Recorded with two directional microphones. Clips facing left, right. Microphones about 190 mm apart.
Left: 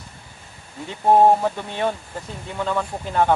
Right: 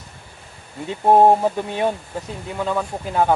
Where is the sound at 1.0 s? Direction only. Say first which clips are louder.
Right 1 dB; 15° right (ahead or behind).